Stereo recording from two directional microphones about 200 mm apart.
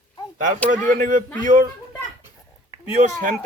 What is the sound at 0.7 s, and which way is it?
Speech, 40° right (ahead or behind).